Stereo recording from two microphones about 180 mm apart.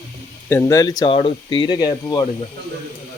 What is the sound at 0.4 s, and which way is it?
Speech, 15° left (ahead or behind).